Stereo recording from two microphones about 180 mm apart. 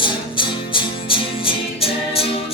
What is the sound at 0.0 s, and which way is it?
Music, 25° left (ahead or behind).